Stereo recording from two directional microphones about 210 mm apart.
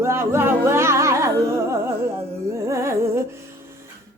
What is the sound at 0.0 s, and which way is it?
Music, 10° right (ahead or behind).